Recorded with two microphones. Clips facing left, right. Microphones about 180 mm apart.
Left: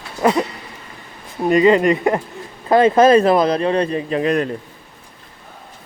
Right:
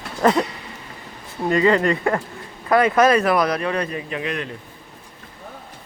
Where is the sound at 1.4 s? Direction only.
20° left (ahead or behind); by 4.4 s 40° left (ahead or behind).